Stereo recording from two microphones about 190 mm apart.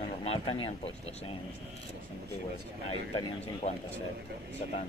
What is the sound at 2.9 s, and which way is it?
Speech, 30° left (ahead or behind).